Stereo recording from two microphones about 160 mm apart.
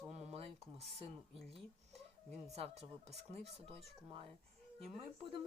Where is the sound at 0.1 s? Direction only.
40° right (ahead or behind).